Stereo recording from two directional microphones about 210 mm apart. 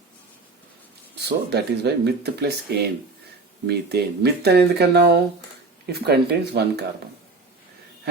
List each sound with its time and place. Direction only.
1.2 s speech: 50° right (ahead or behind)